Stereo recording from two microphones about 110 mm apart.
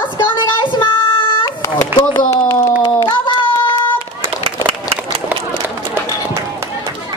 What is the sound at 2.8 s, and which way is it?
Children playing, 40° left (ahead or behind).